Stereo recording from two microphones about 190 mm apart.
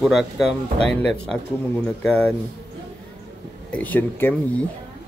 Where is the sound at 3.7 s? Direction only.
10° left (ahead or behind).